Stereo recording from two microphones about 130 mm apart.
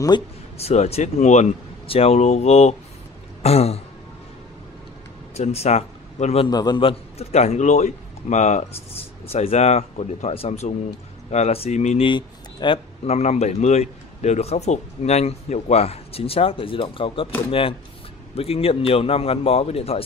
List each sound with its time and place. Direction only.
0.1 s speech: 35° left (ahead or behind)
0.6 s a man's voice: 55° left (ahead or behind)
5.3 s speech: 55° left (ahead or behind)
6.4 s a man's voice: 35° left (ahead or behind); by 8.6 s 65° left (ahead or behind)
9.3 s a man's voice: 50° left (ahead or behind)
12.0 s speech: 35° left (ahead or behind)